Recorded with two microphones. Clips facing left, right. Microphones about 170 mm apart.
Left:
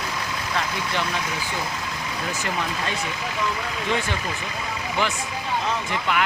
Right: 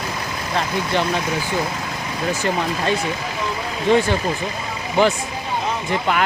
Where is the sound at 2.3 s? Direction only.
30° right (ahead or behind).